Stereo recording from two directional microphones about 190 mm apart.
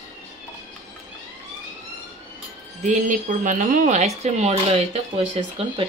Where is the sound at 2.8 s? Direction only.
40° right (ahead or behind).